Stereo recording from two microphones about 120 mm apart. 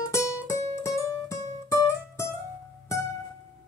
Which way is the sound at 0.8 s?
25° left (ahead or behind).